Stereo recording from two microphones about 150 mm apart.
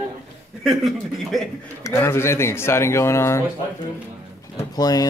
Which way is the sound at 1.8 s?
20° left (ahead or behind).